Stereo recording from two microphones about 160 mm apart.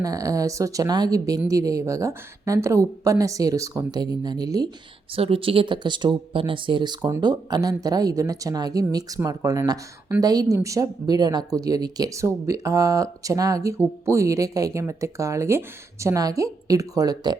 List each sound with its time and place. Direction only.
0.0 s speech: 20° right (ahead or behind)
5.1 s speech: 35° right (ahead or behind)